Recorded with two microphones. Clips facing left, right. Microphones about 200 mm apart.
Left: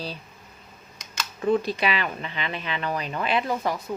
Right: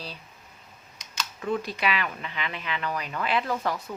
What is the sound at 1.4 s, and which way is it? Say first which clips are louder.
Speech: left 5 dB; 30° left (ahead or behind).